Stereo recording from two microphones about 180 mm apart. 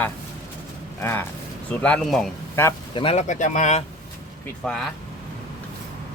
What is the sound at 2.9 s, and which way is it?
Speech, 30° left (ahead or behind).